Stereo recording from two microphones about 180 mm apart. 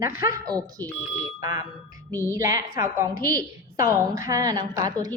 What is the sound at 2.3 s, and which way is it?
A woman's voice, 15° right (ahead or behind).